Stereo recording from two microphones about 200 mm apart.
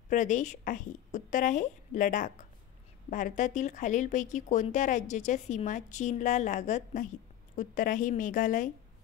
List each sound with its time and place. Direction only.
0.1 s speech: 40° left (ahead or behind)